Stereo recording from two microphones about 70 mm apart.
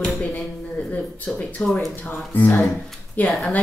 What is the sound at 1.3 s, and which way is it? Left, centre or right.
A woman's voice, centre.